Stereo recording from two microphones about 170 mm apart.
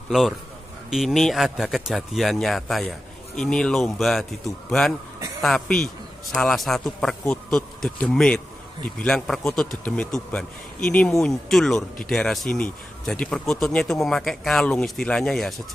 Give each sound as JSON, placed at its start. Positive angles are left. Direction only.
{"t": 0.8, "sound": "speech", "side_deg": 0}